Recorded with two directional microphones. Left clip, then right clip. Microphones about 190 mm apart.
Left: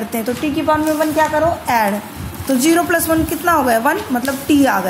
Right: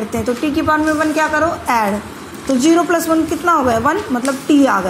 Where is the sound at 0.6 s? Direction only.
Centre (ahead or behind).